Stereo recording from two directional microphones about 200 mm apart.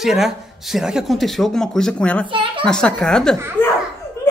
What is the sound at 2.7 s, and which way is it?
Speech, 5° left (ahead or behind).